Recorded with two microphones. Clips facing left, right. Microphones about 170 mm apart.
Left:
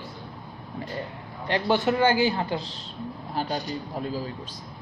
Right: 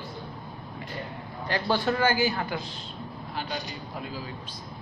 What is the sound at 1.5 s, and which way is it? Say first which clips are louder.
A man's voice: left 3 dB; 20° left (ahead or behind).